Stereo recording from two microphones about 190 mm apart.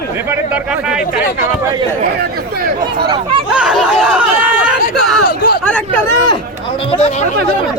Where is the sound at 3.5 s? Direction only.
5° right (ahead or behind).